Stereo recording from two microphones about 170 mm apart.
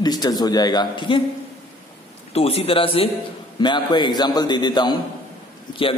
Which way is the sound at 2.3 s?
35° left (ahead or behind).